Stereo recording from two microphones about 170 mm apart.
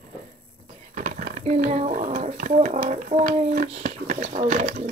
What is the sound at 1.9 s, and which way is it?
Speech, 50° right (ahead or behind).